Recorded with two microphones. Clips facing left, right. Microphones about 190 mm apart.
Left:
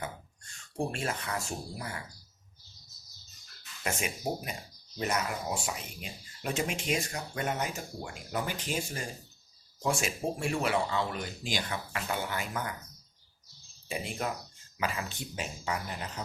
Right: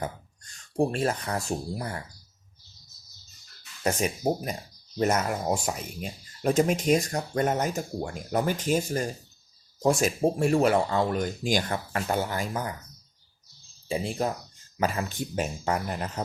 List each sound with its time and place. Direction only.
0.8 s speech: 40° right (ahead or behind)
3.8 s speech: 35° right (ahead or behind)
13.8 s speech: 35° right (ahead or behind)
14.8 s speech: 45° right (ahead or behind)